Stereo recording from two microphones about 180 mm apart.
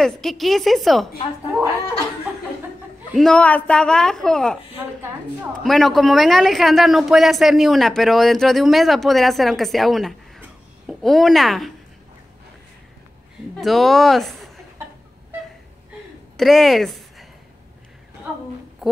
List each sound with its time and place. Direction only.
0.0 s speech: centre (ahead or behind)
3.2 s speech: 5° left (ahead or behind)
5.6 s speech: centre (ahead or behind)
13.6 s speech: centre (ahead or behind)
16.3 s a woman's voice: centre (ahead or behind)
18.8 s a sound: centre (ahead or behind)